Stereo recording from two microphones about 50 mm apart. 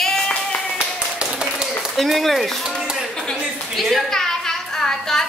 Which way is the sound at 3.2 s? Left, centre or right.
Centre.